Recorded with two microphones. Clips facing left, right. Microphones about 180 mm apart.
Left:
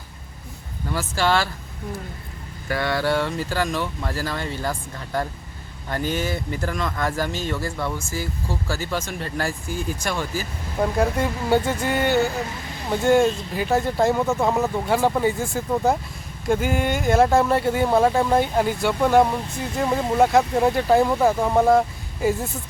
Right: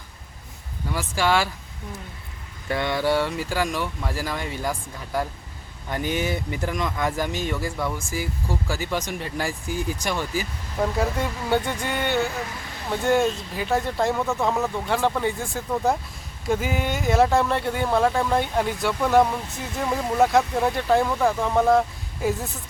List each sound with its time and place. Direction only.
0.9 s speech: 10° right (ahead or behind)
2.6 s speech: 20° right (ahead or behind)
10.9 s speech: centre (ahead or behind)
21.7 s speech: centre (ahead or behind)